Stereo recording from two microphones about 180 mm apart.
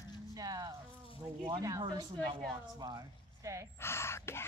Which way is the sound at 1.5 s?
20° right (ahead or behind).